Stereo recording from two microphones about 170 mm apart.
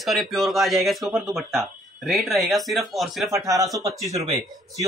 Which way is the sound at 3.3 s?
20° right (ahead or behind).